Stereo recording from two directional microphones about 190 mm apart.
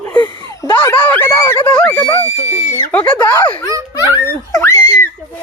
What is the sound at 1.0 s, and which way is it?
Speech, 10° left (ahead or behind).